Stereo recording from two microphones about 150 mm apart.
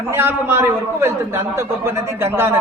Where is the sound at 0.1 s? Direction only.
15° right (ahead or behind).